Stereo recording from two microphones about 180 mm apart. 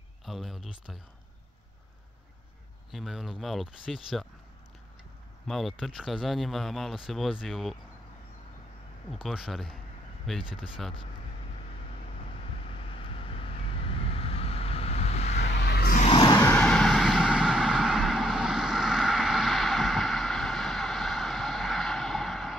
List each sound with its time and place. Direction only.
0.2 s speech: centre (ahead or behind)
2.9 s speech: centre (ahead or behind)
5.5 s speech: centre (ahead or behind)
9.1 s speech: centre (ahead or behind)
12.7 s vehicle: 30° left (ahead or behind)
15.4 s vehicle: 65° left (ahead or behind)
16.0 s a sound: 30° left (ahead or behind)
16.6 s vehicle: centre (ahead or behind)